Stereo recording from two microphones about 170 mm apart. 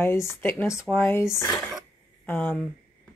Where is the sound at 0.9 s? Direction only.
5° left (ahead or behind).